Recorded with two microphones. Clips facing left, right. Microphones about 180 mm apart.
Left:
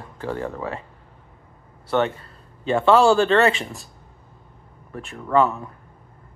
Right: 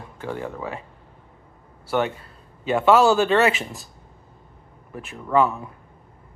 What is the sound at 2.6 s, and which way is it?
Speech, 5° right (ahead or behind).